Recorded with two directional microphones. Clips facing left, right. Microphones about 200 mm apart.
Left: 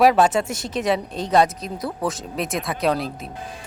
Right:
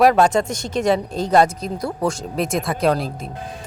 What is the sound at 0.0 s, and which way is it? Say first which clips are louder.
Speech: right 2 dB; 5° left (ahead or behind).